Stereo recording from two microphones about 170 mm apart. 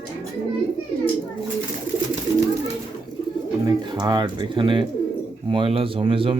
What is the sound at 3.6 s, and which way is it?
Speech, 25° right (ahead or behind).